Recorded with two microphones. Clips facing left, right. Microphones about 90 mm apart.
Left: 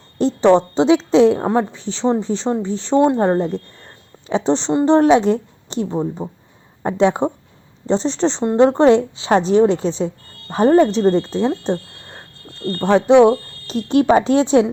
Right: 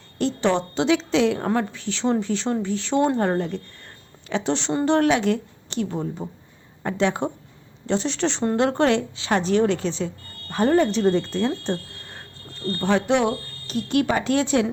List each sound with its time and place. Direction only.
0.2 s speech: 35° left (ahead or behind)
1.4 s speech: 25° left (ahead or behind)
3.8 s a sound: 35° left (ahead or behind)
4.9 s speech: 30° left (ahead or behind)